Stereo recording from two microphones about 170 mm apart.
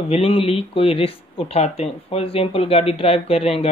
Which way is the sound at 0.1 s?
35° left (ahead or behind).